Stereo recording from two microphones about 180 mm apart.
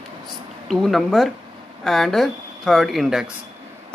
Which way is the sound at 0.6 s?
Centre (ahead or behind).